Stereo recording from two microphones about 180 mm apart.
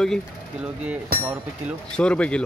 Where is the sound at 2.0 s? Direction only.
5° left (ahead or behind).